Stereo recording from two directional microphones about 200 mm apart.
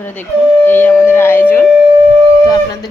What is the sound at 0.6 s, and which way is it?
Speech, 10° left (ahead or behind).